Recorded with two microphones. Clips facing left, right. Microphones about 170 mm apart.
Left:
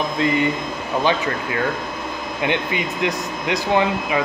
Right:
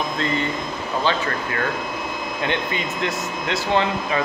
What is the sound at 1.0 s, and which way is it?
Speech, 15° left (ahead or behind).